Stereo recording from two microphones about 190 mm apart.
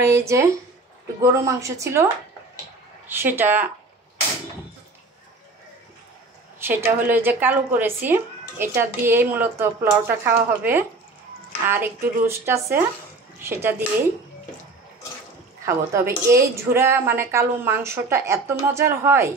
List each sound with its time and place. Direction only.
0.0 s a woman's voice: 15° right (ahead or behind)
3.1 s a woman's voice: 10° right (ahead or behind)
6.6 s a woman's voice: 10° right (ahead or behind)
15.6 s a woman's voice: 15° right (ahead or behind)